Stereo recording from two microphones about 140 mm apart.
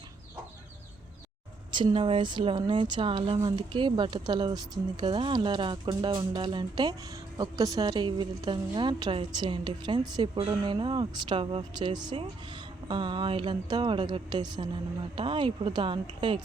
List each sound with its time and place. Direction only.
1.7 s a woman's voice: 35° right (ahead or behind)